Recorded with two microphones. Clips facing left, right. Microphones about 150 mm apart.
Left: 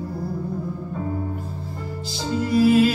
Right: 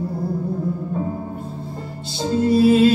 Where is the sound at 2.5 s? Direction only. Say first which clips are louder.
Right 3 dB; 30° right (ahead or behind).